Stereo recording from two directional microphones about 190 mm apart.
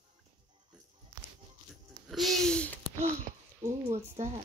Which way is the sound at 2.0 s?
Centre (ahead or behind).